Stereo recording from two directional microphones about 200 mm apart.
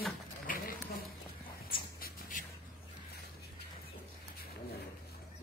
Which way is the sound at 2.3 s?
40° left (ahead or behind).